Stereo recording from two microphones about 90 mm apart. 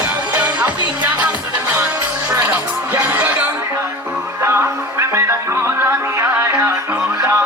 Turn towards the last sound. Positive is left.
turn(degrees=-25)  # may be behind; listen again after turning